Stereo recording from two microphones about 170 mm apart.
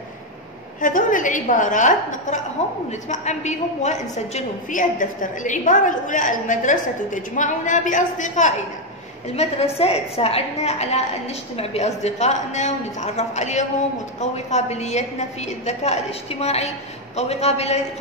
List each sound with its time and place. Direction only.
0.7 s a woman's voice: 50° left (ahead or behind)